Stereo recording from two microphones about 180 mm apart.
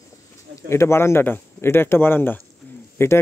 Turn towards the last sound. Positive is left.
turn(degrees=15)  # may be behind; listen again after turning